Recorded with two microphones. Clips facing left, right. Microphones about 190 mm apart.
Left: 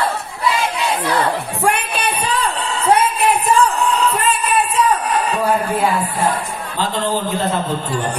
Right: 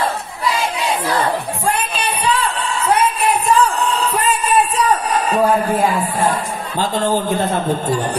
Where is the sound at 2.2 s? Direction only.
40° left (ahead or behind).